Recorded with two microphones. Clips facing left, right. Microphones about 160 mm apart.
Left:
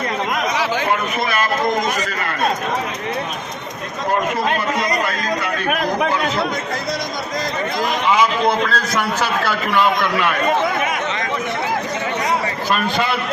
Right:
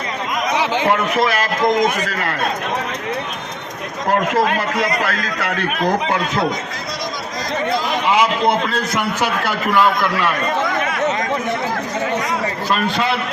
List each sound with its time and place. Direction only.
0.6 s a sound: 20° right (ahead or behind)
0.9 s a man's voice: 90° right
4.4 s speech: 85° right
5.6 s a man's voice: 55° left (ahead or behind)
8.2 s a man's voice: 20° right (ahead or behind)